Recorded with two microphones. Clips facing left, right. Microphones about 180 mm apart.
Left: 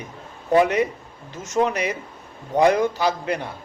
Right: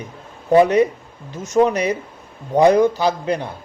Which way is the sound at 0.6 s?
35° right (ahead or behind).